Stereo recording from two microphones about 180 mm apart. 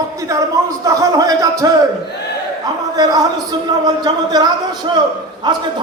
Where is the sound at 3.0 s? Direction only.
20° right (ahead or behind).